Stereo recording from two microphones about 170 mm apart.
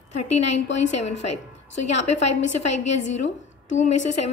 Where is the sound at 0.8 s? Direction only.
40° left (ahead or behind).